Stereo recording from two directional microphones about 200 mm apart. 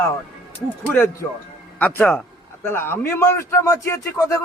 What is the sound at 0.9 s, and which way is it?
A man's voice, 10° left (ahead or behind).